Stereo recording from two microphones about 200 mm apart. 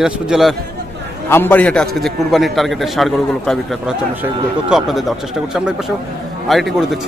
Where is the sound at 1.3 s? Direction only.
10° left (ahead or behind).